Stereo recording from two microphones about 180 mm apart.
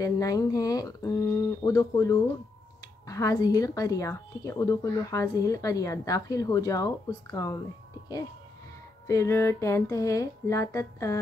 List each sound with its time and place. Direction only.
0.0 s speech: 20° left (ahead or behind)
9.0 s speech: 15° left (ahead or behind)